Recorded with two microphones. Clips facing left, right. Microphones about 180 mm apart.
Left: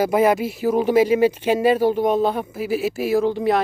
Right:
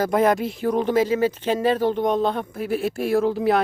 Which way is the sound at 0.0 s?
5° left (ahead or behind).